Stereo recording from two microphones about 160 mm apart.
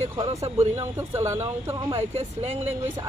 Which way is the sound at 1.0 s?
15° right (ahead or behind).